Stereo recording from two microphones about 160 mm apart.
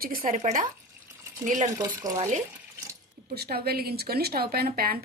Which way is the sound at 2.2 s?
50° right (ahead or behind).